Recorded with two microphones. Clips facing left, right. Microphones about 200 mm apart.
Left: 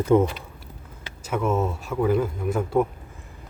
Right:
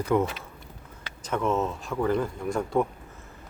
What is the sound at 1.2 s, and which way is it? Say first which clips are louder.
Speech: left 2 dB; 5° left (ahead or behind).